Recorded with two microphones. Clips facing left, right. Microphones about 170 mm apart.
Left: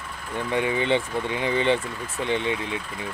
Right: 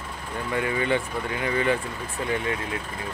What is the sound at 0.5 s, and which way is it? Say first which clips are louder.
Speech: left 2 dB; 20° left (ahead or behind).